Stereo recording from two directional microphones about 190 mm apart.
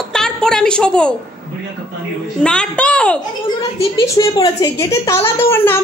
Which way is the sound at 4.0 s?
20° left (ahead or behind).